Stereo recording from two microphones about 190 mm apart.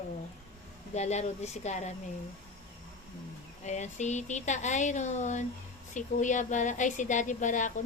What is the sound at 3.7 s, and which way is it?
A woman's voice, 40° left (ahead or behind).